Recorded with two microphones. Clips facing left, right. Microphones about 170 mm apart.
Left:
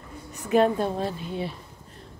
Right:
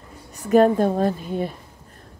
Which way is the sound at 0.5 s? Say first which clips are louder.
Right 5 dB; 45° right (ahead or behind).